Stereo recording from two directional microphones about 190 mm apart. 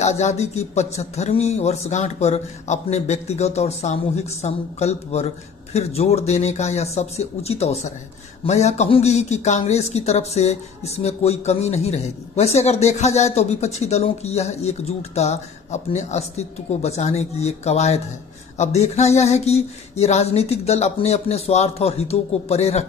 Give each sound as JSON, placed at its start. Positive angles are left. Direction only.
{"t": 0.0, "sound": "speech", "side_deg": 35}